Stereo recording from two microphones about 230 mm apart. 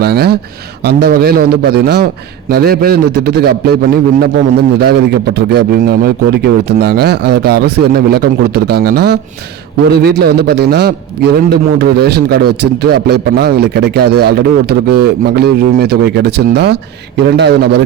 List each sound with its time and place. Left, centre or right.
0.0 s a man's voice: right